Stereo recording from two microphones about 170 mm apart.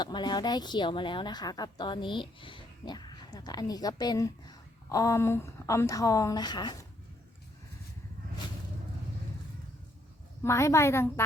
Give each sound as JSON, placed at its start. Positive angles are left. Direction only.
{"t": 0.0, "sound": "a woman's voice", "side_deg": 25}
{"t": 10.4, "sound": "a woman's voice", "side_deg": 15}